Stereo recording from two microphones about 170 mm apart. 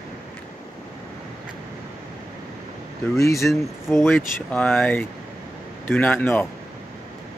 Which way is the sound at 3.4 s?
Centre (ahead or behind).